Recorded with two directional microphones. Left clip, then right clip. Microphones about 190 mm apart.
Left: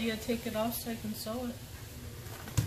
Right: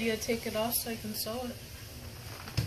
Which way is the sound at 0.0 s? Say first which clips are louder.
Right 3 dB; 25° right (ahead or behind).